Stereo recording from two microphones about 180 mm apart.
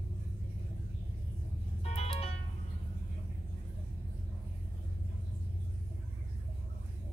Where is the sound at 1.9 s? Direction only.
35° left (ahead or behind).